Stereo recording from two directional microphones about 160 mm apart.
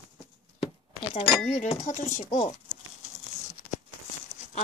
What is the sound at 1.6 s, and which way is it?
Speech, 50° left (ahead or behind).